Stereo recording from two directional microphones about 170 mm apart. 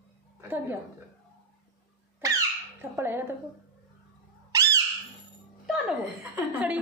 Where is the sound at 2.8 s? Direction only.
15° right (ahead or behind).